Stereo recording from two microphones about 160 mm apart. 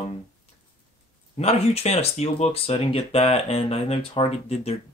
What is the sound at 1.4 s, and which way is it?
Speech, 40° left (ahead or behind).